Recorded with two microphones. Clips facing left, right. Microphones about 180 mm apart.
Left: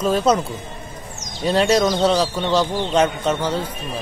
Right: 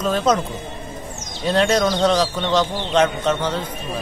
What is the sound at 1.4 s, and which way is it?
Speech, 5° left (ahead or behind).